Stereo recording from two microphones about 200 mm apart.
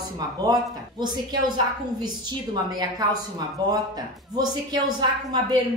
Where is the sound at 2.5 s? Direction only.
20° right (ahead or behind).